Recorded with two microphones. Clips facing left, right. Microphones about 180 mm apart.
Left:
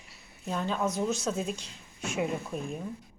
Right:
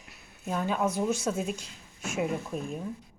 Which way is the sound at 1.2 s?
10° right (ahead or behind).